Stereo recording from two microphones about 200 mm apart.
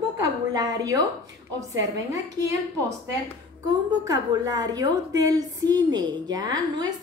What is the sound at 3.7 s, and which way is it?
A woman's voice, 20° right (ahead or behind).